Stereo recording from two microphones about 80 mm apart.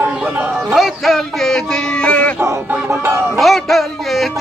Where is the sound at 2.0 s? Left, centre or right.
Centre.